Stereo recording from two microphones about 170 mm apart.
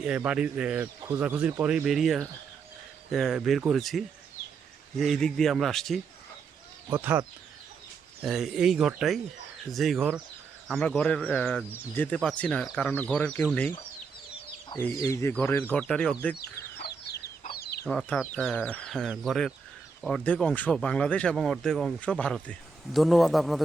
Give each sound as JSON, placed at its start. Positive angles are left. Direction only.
{"t": 0.3, "sound": "speech", "side_deg": -5}
{"t": 6.9, "sound": "speech", "side_deg": -10}
{"t": 14.7, "sound": "speech", "side_deg": 25}
{"t": 16.3, "sound": "chicken", "side_deg": 70}
{"t": 17.8, "sound": "speech", "side_deg": 5}